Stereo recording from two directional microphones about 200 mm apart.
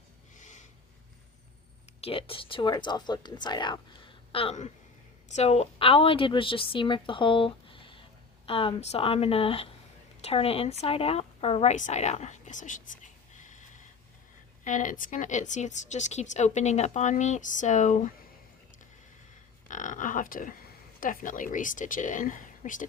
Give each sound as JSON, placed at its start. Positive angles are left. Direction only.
{"t": 2.0, "sound": "a woman's voice", "side_deg": 30}
{"t": 13.3, "sound": "snort", "side_deg": 40}
{"t": 14.6, "sound": "a woman's voice", "side_deg": 40}
{"t": 19.6, "sound": "a sound", "side_deg": 40}
{"t": 21.0, "sound": "a woman's voice", "side_deg": 40}